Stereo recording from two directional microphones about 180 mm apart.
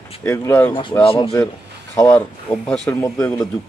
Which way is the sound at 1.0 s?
30° left (ahead or behind).